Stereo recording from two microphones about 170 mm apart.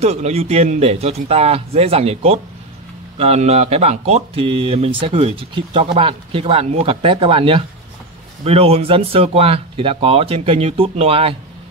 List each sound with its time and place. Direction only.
0.0 s speech: 40° right (ahead or behind)